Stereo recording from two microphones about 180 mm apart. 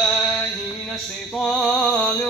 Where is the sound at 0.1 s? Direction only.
Centre (ahead or behind).